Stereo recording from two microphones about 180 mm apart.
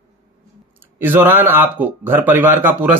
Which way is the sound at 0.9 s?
10° right (ahead or behind).